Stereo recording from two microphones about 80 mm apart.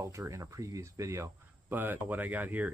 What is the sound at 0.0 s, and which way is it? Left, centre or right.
Speech, right.